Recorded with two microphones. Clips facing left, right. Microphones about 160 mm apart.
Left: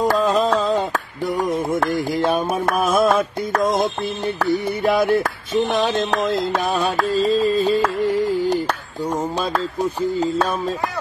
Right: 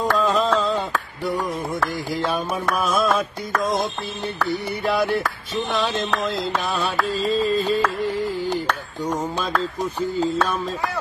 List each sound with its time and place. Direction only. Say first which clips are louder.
0.0 s mantra: left 3 dB; 40° left (ahead or behind)
0.4 s mantra: left 3 dB; 15° left (ahead or behind)
2.1 s mantra: left 4 dB; 50° left (ahead or behind)
2.7 s music: left 3 dB; 20° left (ahead or behind)
4.8 s a sound: left 4 dB; 45° left (ahead or behind)
7.2 s music: left 5 dB; 40° left (ahead or behind)
7.4 s a sound: left 3 dB; 10° left (ahead or behind)
9.0 s speech: left 2 dB; 10° left (ahead or behind)